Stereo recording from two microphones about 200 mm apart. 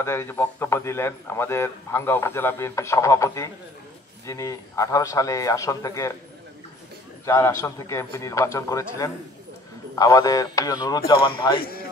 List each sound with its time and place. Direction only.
0.0 s a man's voice: 10° left (ahead or behind)
7.2 s a man's voice: 15° left (ahead or behind)